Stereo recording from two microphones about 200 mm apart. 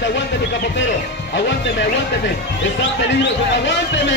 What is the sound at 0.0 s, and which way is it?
Speech, 60° left (ahead or behind).